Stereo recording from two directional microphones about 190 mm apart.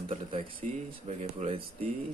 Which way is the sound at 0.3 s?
25° right (ahead or behind).